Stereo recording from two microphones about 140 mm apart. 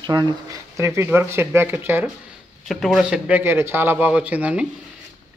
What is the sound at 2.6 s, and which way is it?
A man's voice, centre (ahead or behind).